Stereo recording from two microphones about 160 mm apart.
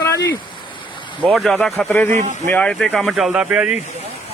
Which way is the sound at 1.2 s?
Centre (ahead or behind).